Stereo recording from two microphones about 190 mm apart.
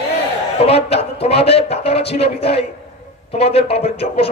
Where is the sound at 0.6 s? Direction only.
30° left (ahead or behind).